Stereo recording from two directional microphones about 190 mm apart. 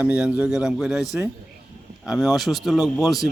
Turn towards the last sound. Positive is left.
turn(degrees=0)  # may be behind; listen again after turning